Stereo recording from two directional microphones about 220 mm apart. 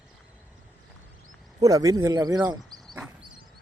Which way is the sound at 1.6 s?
15° right (ahead or behind).